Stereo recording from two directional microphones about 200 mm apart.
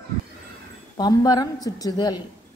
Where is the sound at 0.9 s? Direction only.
20° left (ahead or behind).